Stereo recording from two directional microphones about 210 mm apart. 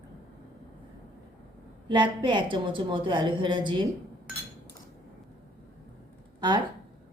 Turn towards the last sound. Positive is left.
turn(degrees=-20)  # may be behind; listen again after turning